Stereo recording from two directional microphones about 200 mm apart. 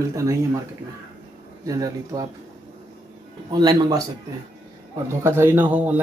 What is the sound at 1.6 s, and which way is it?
Speech, 15° right (ahead or behind).